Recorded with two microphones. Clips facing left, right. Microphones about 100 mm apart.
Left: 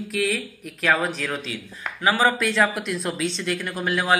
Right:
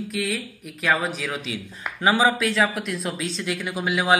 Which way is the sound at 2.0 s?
20° right (ahead or behind).